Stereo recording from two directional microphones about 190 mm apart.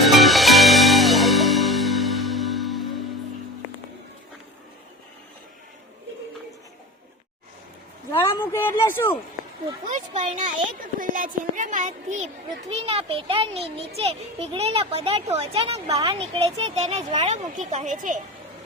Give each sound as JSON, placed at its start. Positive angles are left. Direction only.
{"t": 0.0, "sound": "music", "side_deg": 0}
{"t": 8.1, "sound": "a sound", "side_deg": 15}
{"t": 9.9, "sound": "speech", "side_deg": -40}